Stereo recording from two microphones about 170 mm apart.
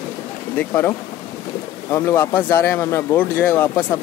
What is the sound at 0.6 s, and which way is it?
Speech, 15° left (ahead or behind).